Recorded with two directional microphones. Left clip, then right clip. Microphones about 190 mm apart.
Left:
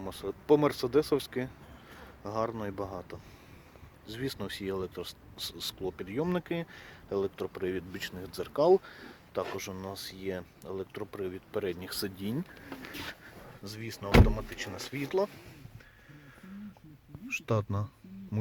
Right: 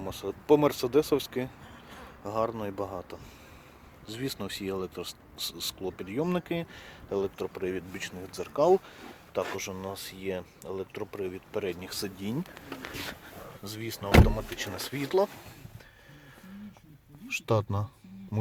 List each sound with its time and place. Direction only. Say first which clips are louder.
0.0 s speech: right 2 dB; 5° right (ahead or behind)
13.7 s speech: right 3 dB; 20° right (ahead or behind)
17.2 s speech: right 4 dB; 15° right (ahead or behind)